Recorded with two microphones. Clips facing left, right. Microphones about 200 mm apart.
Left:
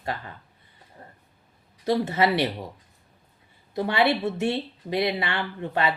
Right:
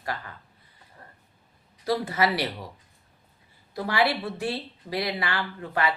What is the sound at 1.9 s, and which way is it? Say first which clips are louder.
Speech: left 3 dB; 25° left (ahead or behind).